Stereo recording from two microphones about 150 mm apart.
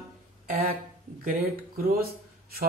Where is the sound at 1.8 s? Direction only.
85° right.